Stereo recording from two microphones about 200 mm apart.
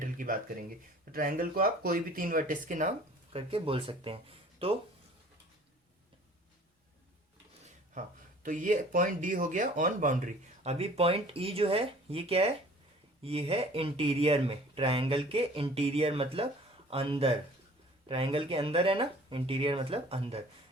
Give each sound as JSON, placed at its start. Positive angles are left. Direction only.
{"t": 0.0, "sound": "speech", "side_deg": -40}
{"t": 3.3, "sound": "speech", "side_deg": -25}
{"t": 8.4, "sound": "speech", "side_deg": -40}